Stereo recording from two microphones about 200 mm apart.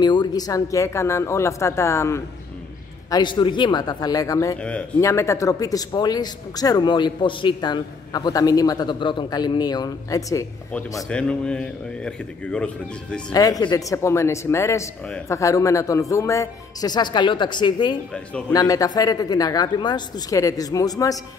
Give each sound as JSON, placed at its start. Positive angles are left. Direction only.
{"t": 0.0, "sound": "speech", "side_deg": 20}
{"t": 4.6, "sound": "speech", "side_deg": 5}
{"t": 11.1, "sound": "a man's voice", "side_deg": 5}
{"t": 13.3, "sound": "speech", "side_deg": 20}